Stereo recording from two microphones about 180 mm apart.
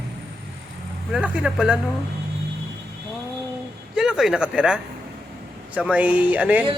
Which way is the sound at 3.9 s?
Centre (ahead or behind).